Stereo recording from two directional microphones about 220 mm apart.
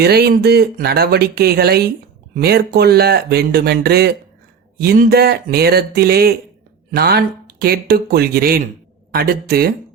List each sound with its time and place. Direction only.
0.0 s speech: 45° right (ahead or behind)